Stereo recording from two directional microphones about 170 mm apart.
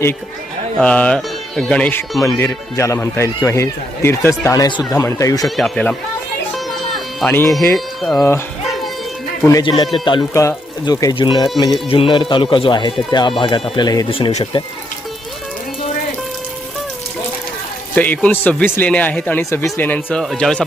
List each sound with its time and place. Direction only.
0.8 s speech: 5° left (ahead or behind)
5.5 s speech: centre (ahead or behind)
7.2 s speech: 10° left (ahead or behind)
9.4 s speech: 20° left (ahead or behind)
17.9 s speech: 10° left (ahead or behind)